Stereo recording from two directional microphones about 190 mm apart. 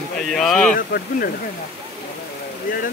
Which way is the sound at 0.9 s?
50° left (ahead or behind).